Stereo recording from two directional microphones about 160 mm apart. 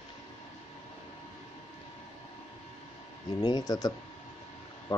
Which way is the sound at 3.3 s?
25° left (ahead or behind).